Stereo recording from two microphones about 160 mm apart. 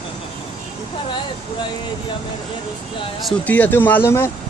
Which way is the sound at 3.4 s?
10° left (ahead or behind).